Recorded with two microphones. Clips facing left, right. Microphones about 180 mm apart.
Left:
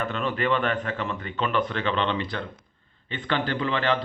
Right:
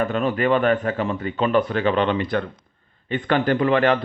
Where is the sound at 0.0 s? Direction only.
45° right (ahead or behind).